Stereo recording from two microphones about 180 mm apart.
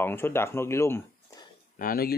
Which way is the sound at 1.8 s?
55° left (ahead or behind).